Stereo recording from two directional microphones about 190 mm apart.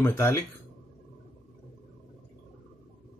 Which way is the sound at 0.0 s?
15° left (ahead or behind).